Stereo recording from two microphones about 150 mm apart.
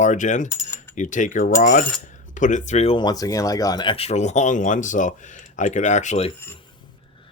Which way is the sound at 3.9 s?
45° left (ahead or behind).